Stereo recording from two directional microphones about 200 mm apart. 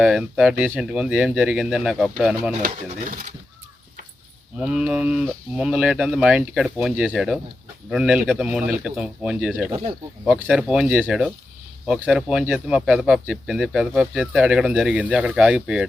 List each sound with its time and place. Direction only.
0.0 s speech: 5° right (ahead or behind)
2.6 s pigeon: 40° right (ahead or behind)
4.6 s speech: 5° right (ahead or behind)